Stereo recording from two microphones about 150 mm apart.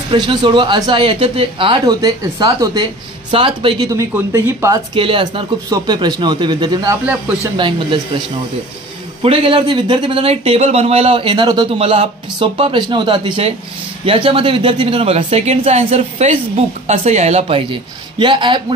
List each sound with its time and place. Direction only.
0.1 s speech: 35° right (ahead or behind)
3.3 s speech: 35° right (ahead or behind)
3.9 s speech: 15° right (ahead or behind)
4.9 s speech: 35° right (ahead or behind)
9.2 s a woman's voice: 35° right (ahead or behind)